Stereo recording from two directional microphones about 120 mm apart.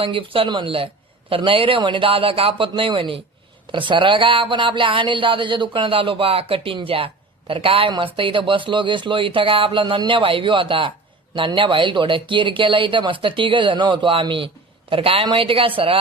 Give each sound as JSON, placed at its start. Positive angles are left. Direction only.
{"t": 0.0, "sound": "speech", "side_deg": -45}